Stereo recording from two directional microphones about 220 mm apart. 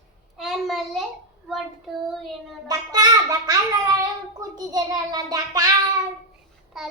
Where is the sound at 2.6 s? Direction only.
15° right (ahead or behind).